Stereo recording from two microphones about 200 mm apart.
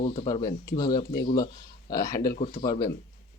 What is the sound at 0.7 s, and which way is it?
Speech, 20° left (ahead or behind).